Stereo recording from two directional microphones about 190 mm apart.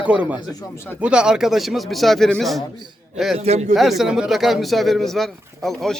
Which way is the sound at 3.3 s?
35° right (ahead or behind).